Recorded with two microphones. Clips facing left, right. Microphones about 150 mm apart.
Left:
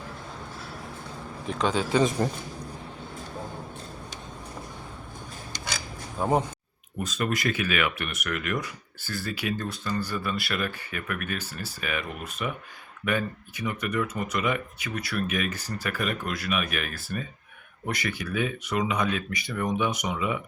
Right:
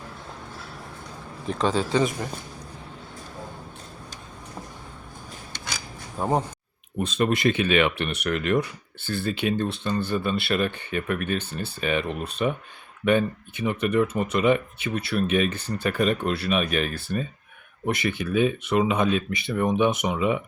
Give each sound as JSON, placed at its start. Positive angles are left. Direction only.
{"t": 1.5, "sound": "speech", "side_deg": 0}
{"t": 2.2, "sound": "a man's voice", "side_deg": 35}
{"t": 6.2, "sound": "speech", "side_deg": 0}
{"t": 7.0, "sound": "speech", "side_deg": -25}